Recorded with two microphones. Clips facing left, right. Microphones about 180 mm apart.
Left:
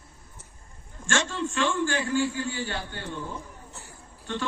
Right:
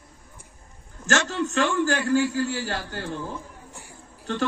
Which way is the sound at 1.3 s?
75° right (ahead or behind).